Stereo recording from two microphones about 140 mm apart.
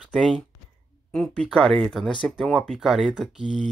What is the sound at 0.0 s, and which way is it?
Speech, 5° right (ahead or behind).